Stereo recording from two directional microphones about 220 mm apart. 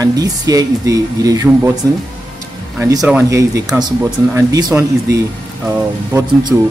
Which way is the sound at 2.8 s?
15° right (ahead or behind).